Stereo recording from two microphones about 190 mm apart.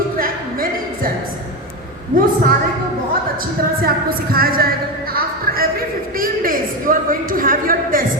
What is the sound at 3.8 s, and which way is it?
A woman's voice, 50° right (ahead or behind).